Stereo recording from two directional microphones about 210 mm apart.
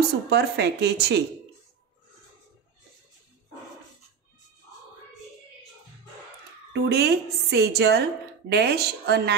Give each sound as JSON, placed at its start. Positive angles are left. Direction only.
{"t": 0.3, "sound": "a woman's voice", "side_deg": -50}
{"t": 6.7, "sound": "a woman's voice", "side_deg": -50}